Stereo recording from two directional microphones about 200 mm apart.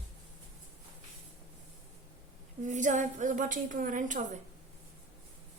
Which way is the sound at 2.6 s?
40° right (ahead or behind).